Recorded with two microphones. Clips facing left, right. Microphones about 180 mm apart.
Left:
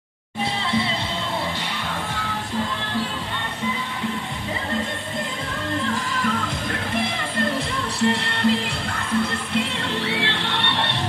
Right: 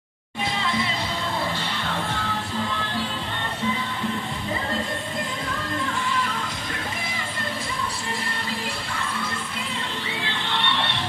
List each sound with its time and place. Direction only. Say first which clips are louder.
0.7 s music: left 4 dB; 30° left (ahead or behind)
8.0 s music: left 11 dB; 70° left (ahead or behind)